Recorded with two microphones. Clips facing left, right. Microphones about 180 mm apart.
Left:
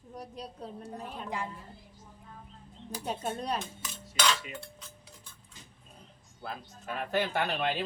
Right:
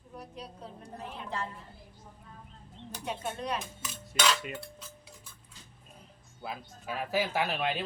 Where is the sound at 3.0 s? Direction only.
40° left (ahead or behind).